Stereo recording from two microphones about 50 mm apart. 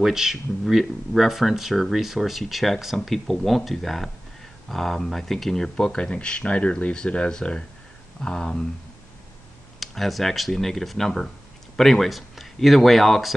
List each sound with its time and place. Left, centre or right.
0.0 s speech: centre
9.8 s speech: centre